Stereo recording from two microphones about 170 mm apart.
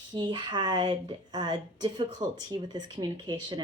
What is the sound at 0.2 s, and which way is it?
Speech, 30° right (ahead or behind).